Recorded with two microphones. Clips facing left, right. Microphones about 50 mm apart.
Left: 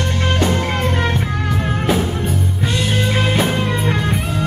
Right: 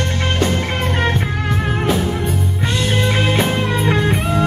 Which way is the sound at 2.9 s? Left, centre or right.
Centre.